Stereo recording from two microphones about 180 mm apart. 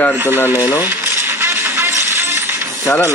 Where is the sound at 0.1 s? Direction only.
10° right (ahead or behind).